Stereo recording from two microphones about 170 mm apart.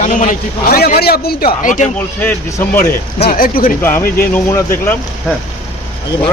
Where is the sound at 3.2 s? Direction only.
55° left (ahead or behind).